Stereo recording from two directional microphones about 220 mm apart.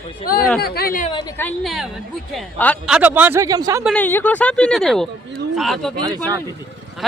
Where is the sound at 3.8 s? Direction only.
5° left (ahead or behind).